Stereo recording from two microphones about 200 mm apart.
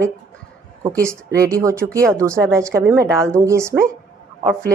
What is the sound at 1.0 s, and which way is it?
A woman's voice, 15° right (ahead or behind).